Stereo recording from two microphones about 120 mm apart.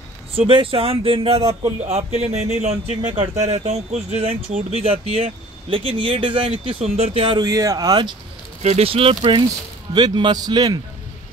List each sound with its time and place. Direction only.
0.4 s speech: 50° right (ahead or behind)
7.3 s speech: 30° right (ahead or behind)
8.6 s speech: 55° right (ahead or behind); by 10.8 s 35° right (ahead or behind)